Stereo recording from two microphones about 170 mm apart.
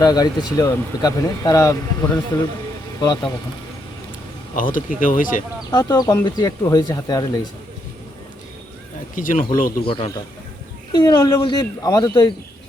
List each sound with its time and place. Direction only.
0.0 s speech: 25° left (ahead or behind)
4.5 s speech: 50° left (ahead or behind)
5.7 s speech: 25° left (ahead or behind)
9.1 s speech: 50° left (ahead or behind)
9.8 s a man's voice: 30° left (ahead or behind)